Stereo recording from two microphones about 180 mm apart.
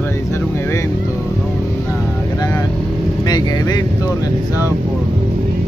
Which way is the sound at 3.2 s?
20° left (ahead or behind).